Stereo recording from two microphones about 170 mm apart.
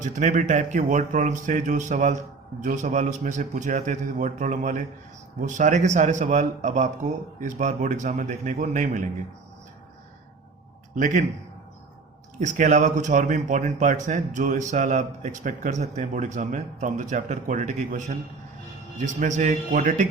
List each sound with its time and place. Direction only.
0.0 s speech: 45° right (ahead or behind)
10.9 s speech: 50° right (ahead or behind)
12.4 s speech: 45° right (ahead or behind)